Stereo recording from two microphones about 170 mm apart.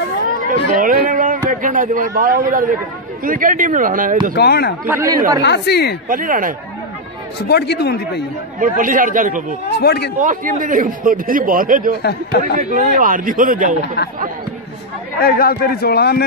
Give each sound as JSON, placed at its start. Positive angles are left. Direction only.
{"t": 0.7, "sound": "a sound", "side_deg": -55}
{"t": 3.3, "sound": "a man's voice", "side_deg": -55}
{"t": 4.4, "sound": "speech", "side_deg": 70}
{"t": 4.8, "sound": "speech", "side_deg": -15}
{"t": 5.4, "sound": "speech", "side_deg": 85}
{"t": 6.0, "sound": "a man's voice", "side_deg": -55}
{"t": 7.3, "sound": "speech", "side_deg": 75}
{"t": 8.5, "sound": "a man's voice", "side_deg": -50}
{"t": 9.7, "sound": "speech", "side_deg": 75}
{"t": 10.1, "sound": "a man's voice", "side_deg": -50}
{"t": 12.0, "sound": "speech", "side_deg": 75}
{"t": 12.5, "sound": "a man's voice", "side_deg": -50}
{"t": 15.1, "sound": "a man's voice", "side_deg": 65}